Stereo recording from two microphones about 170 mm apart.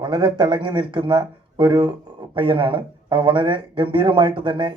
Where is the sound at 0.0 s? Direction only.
25° right (ahead or behind).